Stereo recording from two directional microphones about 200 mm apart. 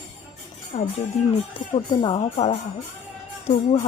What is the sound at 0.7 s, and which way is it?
Speech, 30° left (ahead or behind).